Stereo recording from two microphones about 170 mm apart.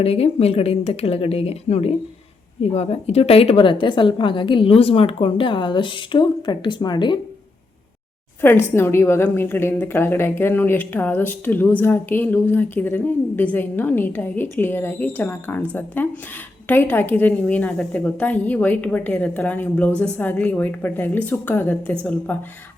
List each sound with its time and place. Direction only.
0.0 s a woman's voice: 35° left (ahead or behind)
8.4 s a woman's voice: 15° left (ahead or behind)